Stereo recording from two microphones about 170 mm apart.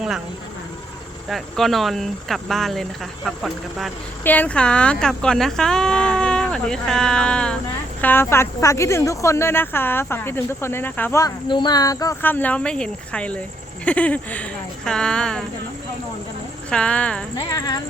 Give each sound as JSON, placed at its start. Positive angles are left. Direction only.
{"t": 1.3, "sound": "speech", "side_deg": 0}
{"t": 4.2, "sound": "speech", "side_deg": 10}
{"t": 11.4, "sound": "speech", "side_deg": 25}
{"t": 16.6, "sound": "speech", "side_deg": 5}
{"t": 17.3, "sound": "speech", "side_deg": 25}